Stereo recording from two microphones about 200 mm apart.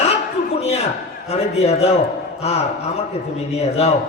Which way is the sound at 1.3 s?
30° left (ahead or behind).